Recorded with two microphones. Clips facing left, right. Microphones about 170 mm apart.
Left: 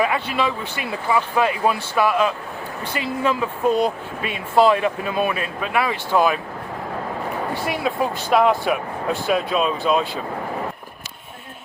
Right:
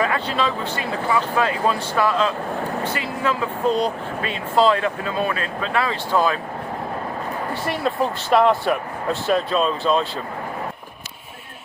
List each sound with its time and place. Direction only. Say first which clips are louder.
0.0 s speech: left 1 dB; 15° left (ahead or behind)
7.7 s speech: right 2 dB; 5° left (ahead or behind)